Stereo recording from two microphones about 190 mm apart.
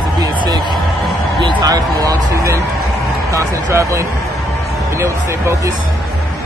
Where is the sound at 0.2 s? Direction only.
20° right (ahead or behind).